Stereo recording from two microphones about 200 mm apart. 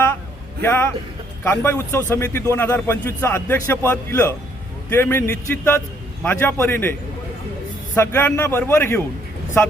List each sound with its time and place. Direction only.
0.6 s a man's voice: 10° left (ahead or behind)
7.9 s a man's voice: 10° left (ahead or behind)